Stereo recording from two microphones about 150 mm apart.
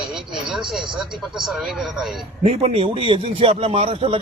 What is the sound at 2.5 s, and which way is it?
A man's voice, 45° right (ahead or behind).